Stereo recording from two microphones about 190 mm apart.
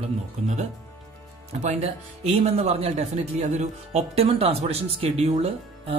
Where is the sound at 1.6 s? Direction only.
35° right (ahead or behind).